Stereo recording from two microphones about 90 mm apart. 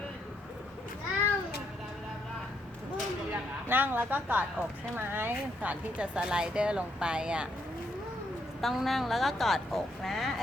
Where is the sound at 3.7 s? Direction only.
20° right (ahead or behind).